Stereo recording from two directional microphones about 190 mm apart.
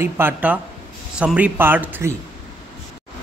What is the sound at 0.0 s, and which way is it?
Speech, 10° right (ahead or behind).